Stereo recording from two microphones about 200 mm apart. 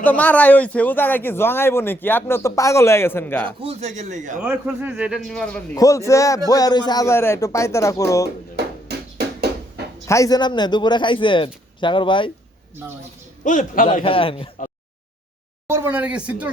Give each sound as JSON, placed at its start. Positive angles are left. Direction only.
{"t": 0.0, "sound": "speech", "side_deg": 10}
{"t": 3.6, "sound": "speech", "side_deg": -30}
{"t": 4.4, "sound": "a man's voice", "side_deg": -5}
{"t": 5.7, "sound": "speech", "side_deg": 15}
{"t": 8.5, "sound": "a sound", "side_deg": -55}
{"t": 10.1, "sound": "speech", "side_deg": 15}
{"t": 13.4, "sound": "a man's voice", "side_deg": 40}
{"t": 14.0, "sound": "speech", "side_deg": 25}
{"t": 15.6, "sound": "speech", "side_deg": -10}